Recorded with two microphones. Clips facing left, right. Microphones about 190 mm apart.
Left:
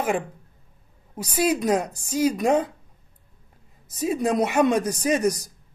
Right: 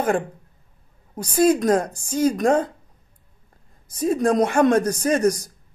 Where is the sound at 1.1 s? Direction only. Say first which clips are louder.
Right 5 dB; 5° left (ahead or behind).